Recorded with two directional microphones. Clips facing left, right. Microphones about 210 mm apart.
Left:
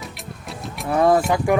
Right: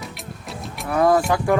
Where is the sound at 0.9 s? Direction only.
25° left (ahead or behind).